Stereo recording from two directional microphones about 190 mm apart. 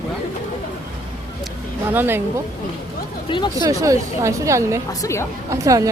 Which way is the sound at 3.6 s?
15° right (ahead or behind).